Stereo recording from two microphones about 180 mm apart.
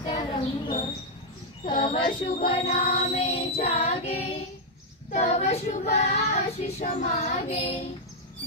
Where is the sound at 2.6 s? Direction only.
35° left (ahead or behind).